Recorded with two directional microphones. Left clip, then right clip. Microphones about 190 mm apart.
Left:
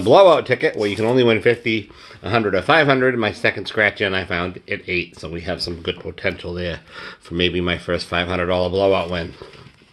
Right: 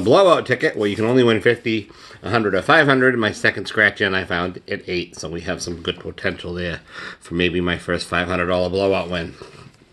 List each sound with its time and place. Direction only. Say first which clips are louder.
0.0 s speech: left 2 dB; 25° right (ahead or behind)